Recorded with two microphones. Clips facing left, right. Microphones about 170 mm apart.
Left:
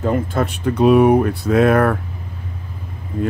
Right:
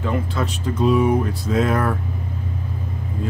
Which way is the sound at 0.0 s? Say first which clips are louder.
Left 5 dB; 50° left (ahead or behind).